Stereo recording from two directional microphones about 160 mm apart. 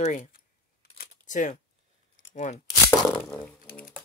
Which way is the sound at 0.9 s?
50° left (ahead or behind).